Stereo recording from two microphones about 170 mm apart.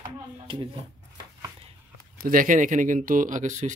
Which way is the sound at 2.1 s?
55° right (ahead or behind).